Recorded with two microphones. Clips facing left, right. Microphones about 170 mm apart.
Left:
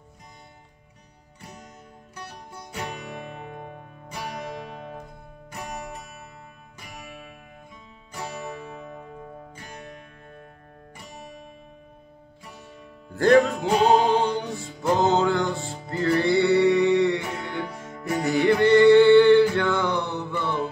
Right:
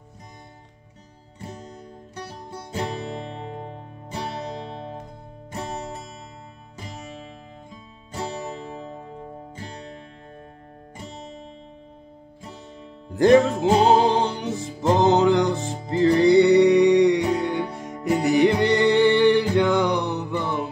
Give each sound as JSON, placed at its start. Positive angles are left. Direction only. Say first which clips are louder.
{"t": 2.1, "sound": "music", "louder": "right 4 dB", "side_deg": -30}
{"t": 13.1, "sound": "music", "louder": "right 2 dB", "side_deg": -20}